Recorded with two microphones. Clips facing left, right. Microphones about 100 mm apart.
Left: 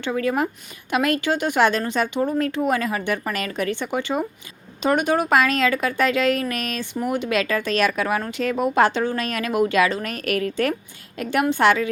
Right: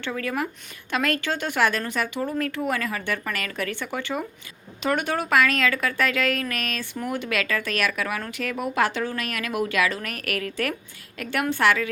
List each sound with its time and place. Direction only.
0.0 s a woman's voice: 20° left (ahead or behind)